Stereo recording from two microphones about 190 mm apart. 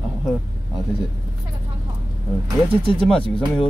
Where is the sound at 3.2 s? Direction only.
30° left (ahead or behind).